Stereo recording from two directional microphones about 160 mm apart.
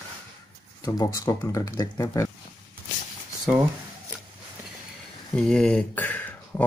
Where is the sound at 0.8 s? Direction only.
20° left (ahead or behind).